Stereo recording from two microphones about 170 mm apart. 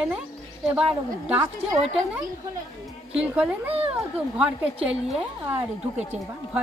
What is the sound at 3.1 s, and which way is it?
A woman's voice, 10° right (ahead or behind).